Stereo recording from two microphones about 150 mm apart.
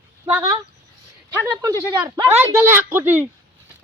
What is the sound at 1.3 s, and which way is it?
Speech, 15° right (ahead or behind).